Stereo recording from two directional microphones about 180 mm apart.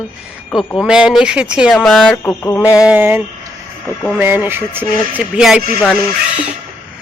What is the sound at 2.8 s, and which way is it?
Speech, 10° right (ahead or behind).